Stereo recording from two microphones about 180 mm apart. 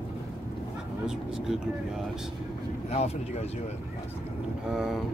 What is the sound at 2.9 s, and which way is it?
Speech, 35° left (ahead or behind).